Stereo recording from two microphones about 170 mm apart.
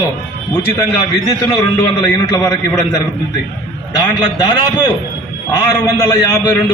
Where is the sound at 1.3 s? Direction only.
20° left (ahead or behind).